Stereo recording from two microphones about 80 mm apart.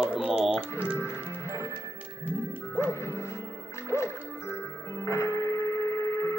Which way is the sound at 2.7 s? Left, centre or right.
Left.